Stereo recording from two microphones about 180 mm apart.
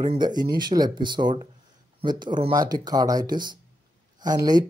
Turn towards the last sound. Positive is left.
turn(degrees=-20)  # may be behind; listen again after turning